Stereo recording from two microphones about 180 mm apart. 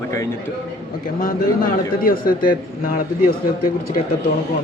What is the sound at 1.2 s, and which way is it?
A man's voice, 50° left (ahead or behind).